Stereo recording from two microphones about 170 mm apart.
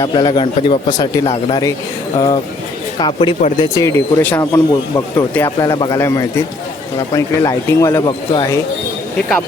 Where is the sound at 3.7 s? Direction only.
15° left (ahead or behind).